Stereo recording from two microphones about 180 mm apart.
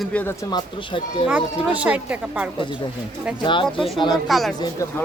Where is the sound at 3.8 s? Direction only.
25° left (ahead or behind).